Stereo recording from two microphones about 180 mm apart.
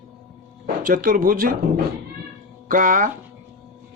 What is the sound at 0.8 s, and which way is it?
Speech, 50° right (ahead or behind).